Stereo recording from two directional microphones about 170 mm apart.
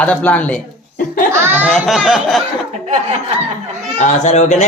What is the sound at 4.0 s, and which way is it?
Speech, 45° left (ahead or behind).